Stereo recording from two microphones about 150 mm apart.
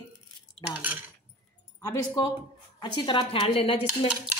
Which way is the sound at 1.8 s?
25° left (ahead or behind).